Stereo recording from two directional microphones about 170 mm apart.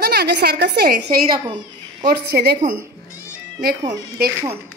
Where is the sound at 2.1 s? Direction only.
65° right (ahead or behind).